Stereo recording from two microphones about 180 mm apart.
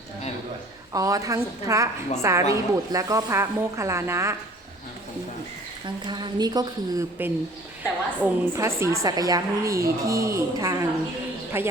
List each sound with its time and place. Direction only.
0.9 s speech: 20° right (ahead or behind)
5.8 s a woman's voice: 25° right (ahead or behind)